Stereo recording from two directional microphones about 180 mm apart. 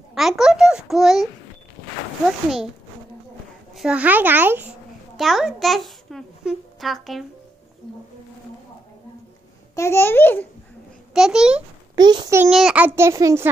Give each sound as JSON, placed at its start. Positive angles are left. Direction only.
{"t": 0.1, "sound": "a child's voice", "side_deg": 0}
{"t": 3.7, "sound": "a child's voice", "side_deg": -5}
{"t": 9.8, "sound": "a child's voice", "side_deg": 15}
{"t": 11.1, "sound": "a child's voice", "side_deg": -5}
{"t": 11.9, "sound": "a child's voice", "side_deg": -25}
{"t": 12.4, "sound": "a child's voice", "side_deg": -5}